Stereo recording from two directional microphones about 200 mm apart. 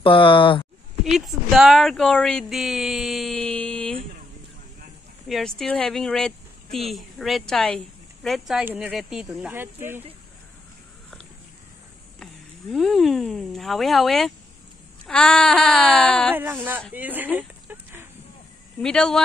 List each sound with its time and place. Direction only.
0.0 s speech: 25° left (ahead or behind)
1.0 s speech: centre (ahead or behind)
5.3 s speech: 5° left (ahead or behind)
12.7 s speech: centre (ahead or behind)
16.9 s a sound: 10° right (ahead or behind)
18.8 s speech: 5° left (ahead or behind)